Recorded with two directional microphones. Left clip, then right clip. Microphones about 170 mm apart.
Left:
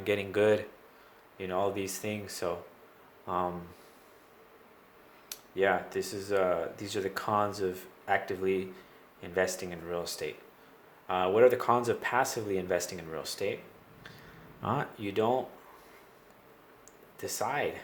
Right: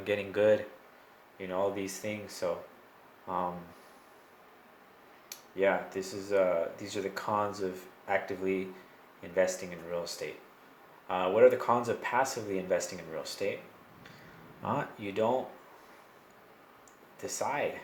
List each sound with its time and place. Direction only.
0.0 s speech: 40° left (ahead or behind)
5.3 s speech: 45° left (ahead or behind)
14.6 s speech: 45° left (ahead or behind)
17.2 s speech: 45° left (ahead or behind)